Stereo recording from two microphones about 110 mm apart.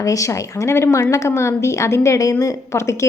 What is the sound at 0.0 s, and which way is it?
A woman's voice, 30° left (ahead or behind).